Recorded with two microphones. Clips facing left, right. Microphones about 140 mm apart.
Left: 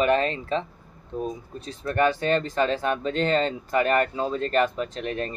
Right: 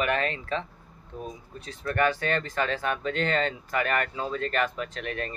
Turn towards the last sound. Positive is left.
turn(degrees=25)  # may be behind; listen again after turning